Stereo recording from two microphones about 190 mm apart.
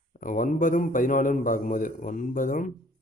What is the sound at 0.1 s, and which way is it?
Speech, 45° left (ahead or behind).